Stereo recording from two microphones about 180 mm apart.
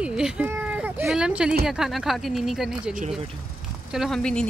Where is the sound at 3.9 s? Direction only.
Centre (ahead or behind).